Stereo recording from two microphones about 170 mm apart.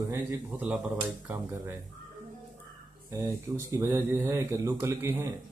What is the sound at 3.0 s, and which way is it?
Speech, 20° right (ahead or behind).